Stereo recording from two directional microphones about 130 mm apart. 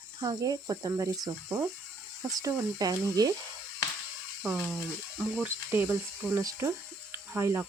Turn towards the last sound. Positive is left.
turn(degrees=-20)  # may be behind; listen again after turning